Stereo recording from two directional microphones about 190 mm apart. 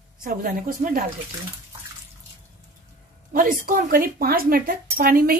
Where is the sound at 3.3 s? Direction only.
50° right (ahead or behind).